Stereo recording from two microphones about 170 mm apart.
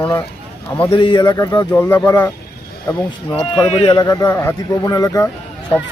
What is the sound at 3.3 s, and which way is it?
A man's voice, 35° left (ahead or behind).